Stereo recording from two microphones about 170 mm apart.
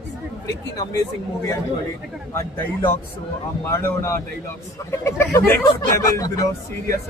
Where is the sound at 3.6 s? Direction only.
15° left (ahead or behind).